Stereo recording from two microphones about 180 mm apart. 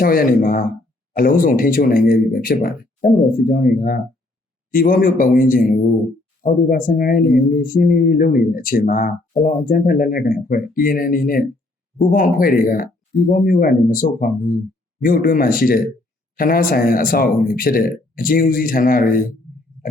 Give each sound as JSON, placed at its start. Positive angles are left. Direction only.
{"t": 0.0, "sound": "speech", "side_deg": 55}